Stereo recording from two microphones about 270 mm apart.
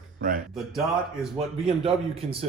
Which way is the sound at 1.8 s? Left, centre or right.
Right.